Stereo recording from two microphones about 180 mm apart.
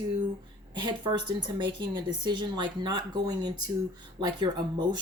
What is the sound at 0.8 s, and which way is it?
A woman's voice, 25° right (ahead or behind).